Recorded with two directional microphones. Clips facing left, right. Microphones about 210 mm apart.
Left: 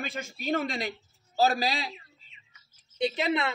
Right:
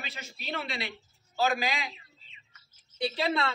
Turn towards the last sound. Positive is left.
turn(degrees=20)  # may be behind; listen again after turning